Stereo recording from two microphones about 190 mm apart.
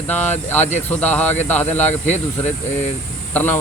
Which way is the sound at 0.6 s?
35° left (ahead or behind).